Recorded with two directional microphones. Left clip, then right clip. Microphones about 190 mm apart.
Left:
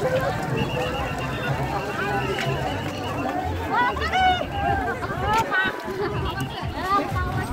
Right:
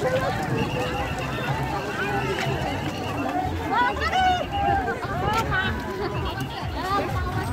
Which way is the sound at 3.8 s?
65° right (ahead or behind).